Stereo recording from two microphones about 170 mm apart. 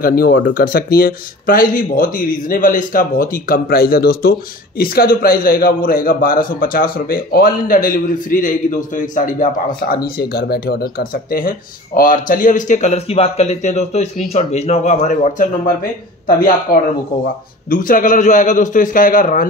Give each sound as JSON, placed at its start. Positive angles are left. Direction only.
{"t": 0.0, "sound": "speech", "side_deg": 60}
{"t": 16.7, "sound": "speech", "side_deg": 65}
{"t": 17.6, "sound": "a man's voice", "side_deg": 55}